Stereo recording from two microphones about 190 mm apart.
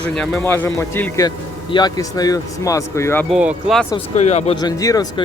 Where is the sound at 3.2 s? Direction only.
Centre (ahead or behind).